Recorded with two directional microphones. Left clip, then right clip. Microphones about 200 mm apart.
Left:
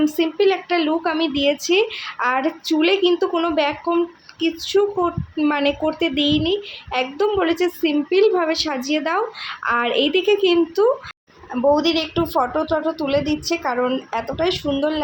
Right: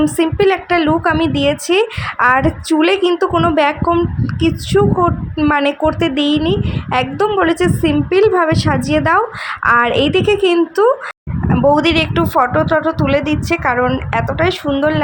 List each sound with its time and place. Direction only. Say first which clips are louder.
0.0 s speech: right 4 dB; 20° right (ahead or behind)